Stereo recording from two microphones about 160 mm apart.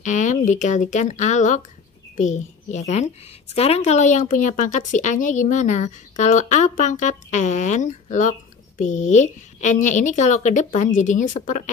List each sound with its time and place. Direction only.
0.0 s a woman's voice: 50° left (ahead or behind)